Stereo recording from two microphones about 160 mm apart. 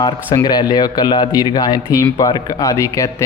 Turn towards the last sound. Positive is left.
turn(degrees=20)  # may be behind; listen again after turning